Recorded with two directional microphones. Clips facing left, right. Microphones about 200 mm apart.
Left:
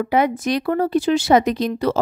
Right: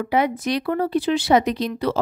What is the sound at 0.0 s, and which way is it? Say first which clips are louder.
A woman's voice: left 2 dB; 50° left (ahead or behind).